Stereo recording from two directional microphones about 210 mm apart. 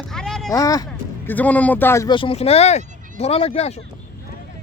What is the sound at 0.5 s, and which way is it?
Speech, 15° left (ahead or behind).